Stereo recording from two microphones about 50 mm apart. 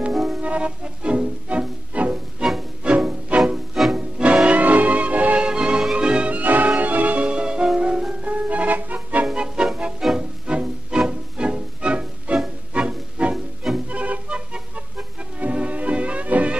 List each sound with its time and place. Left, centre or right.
0.1 s music: centre
0.4 s music: right
3.7 s music: centre
4.5 s music: right
5.5 s music: centre
8.2 s music: right
9.2 s music: centre